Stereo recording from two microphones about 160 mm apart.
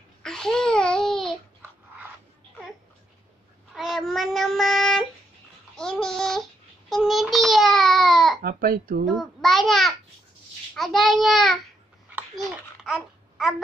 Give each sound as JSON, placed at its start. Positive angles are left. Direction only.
{"t": 0.2, "sound": "babbling", "side_deg": 5}
{"t": 3.7, "sound": "child singing", "side_deg": 0}
{"t": 5.8, "sound": "a child's voice", "side_deg": 5}
{"t": 8.4, "sound": "speech", "side_deg": -65}
{"t": 9.0, "sound": "a child's voice", "side_deg": 0}
{"t": 12.8, "sound": "babbling", "side_deg": 0}